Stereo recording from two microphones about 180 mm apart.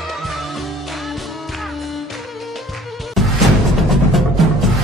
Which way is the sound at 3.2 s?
Centre (ahead or behind).